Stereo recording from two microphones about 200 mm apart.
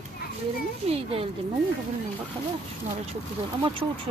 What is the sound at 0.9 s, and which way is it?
Speech, 30° right (ahead or behind).